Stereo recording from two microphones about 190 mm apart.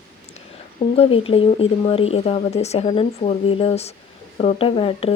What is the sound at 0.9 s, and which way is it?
Speech, 30° left (ahead or behind).